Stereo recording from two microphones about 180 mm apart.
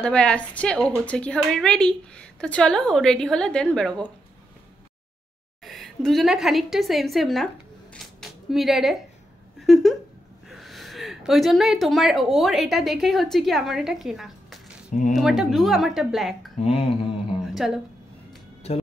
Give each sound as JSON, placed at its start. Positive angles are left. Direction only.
{"t": 0.0, "sound": "a woman's voice", "side_deg": 5}
{"t": 5.6, "sound": "a woman's voice", "side_deg": 0}
{"t": 7.9, "sound": "a sound", "side_deg": 0}
{"t": 10.5, "sound": "a woman's voice", "side_deg": 0}
{"t": 16.5, "sound": "mantra", "side_deg": 35}
{"t": 17.6, "sound": "a woman's voice", "side_deg": 0}